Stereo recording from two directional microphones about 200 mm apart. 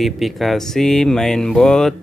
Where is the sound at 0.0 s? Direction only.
Centre (ahead or behind).